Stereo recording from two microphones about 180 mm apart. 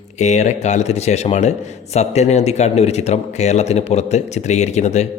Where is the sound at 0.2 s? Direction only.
40° left (ahead or behind).